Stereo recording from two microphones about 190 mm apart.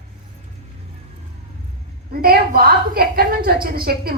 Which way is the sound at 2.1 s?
55° right (ahead or behind).